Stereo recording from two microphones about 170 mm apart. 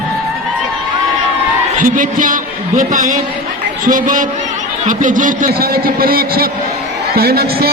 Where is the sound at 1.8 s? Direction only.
50° right (ahead or behind).